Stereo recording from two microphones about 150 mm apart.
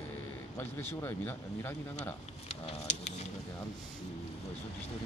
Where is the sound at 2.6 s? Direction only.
40° left (ahead or behind).